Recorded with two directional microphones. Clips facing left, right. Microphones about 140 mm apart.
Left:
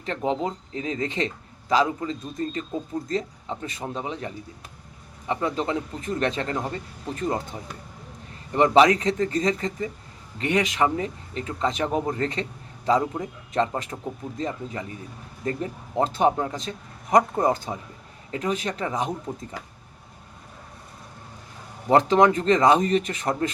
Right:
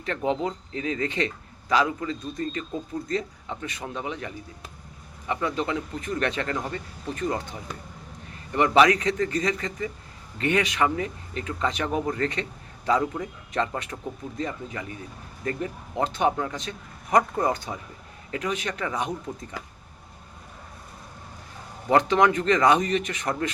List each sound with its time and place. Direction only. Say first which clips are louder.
0.0 s speech: even; 30° left (ahead or behind)
5.3 s speech: left 1 dB; 30° left (ahead or behind)
8.5 s speech: left 2 dB; 25° left (ahead or behind)
21.8 s speech: left 2 dB; 30° left (ahead or behind)